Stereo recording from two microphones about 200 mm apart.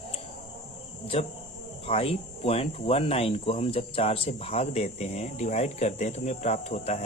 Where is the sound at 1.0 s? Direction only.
30° left (ahead or behind).